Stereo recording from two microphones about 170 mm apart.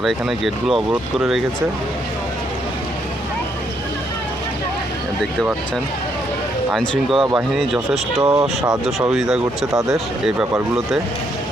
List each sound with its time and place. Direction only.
0.0 s speech: centre (ahead or behind)
6.7 s speech: centre (ahead or behind)
8.2 s speech: 20° right (ahead or behind)
9.0 s speech: 5° right (ahead or behind)